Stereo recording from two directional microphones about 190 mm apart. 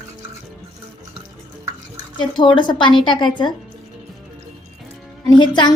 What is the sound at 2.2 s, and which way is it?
A woman's voice, 25° left (ahead or behind).